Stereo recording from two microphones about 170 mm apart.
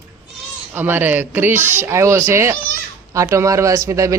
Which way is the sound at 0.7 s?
10° right (ahead or behind).